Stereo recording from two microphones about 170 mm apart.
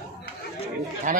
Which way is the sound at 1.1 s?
50° right (ahead or behind).